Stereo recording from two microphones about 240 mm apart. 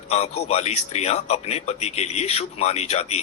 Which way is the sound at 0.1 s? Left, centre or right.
Left.